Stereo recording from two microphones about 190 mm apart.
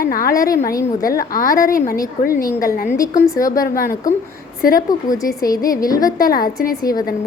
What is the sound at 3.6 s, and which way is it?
Speech, 45° left (ahead or behind).